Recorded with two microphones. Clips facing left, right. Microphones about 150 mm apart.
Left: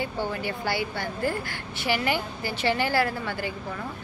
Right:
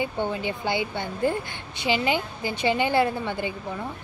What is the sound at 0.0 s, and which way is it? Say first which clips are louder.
A woman's voice: right 2 dB; 20° right (ahead or behind).